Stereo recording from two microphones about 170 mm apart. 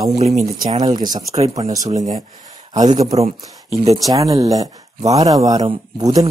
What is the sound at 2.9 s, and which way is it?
Speech, 20° right (ahead or behind).